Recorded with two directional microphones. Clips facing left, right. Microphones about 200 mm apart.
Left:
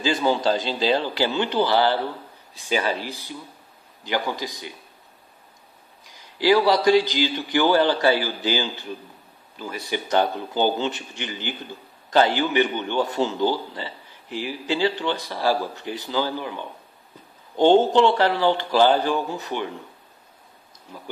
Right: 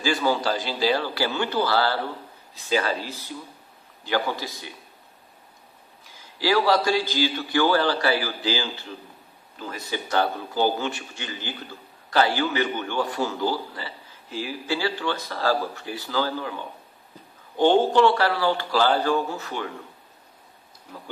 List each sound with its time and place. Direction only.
0.0 s a man's voice: 20° left (ahead or behind)
6.0 s a man's voice: 15° left (ahead or behind)
17.6 s a man's voice: 25° left (ahead or behind)